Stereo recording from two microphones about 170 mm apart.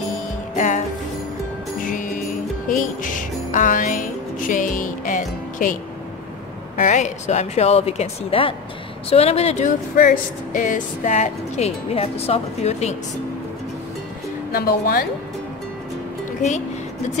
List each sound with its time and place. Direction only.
0.6 s speech: 45° left (ahead or behind)
1.8 s music: 50° left (ahead or behind)
6.8 s speech: 45° left (ahead or behind)
9.9 s speech: 50° left (ahead or behind)
14.5 s a woman's voice: 60° left (ahead or behind)
16.3 s music: 45° left (ahead or behind)